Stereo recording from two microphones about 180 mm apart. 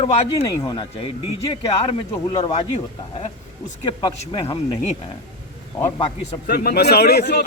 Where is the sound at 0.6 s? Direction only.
20° left (ahead or behind).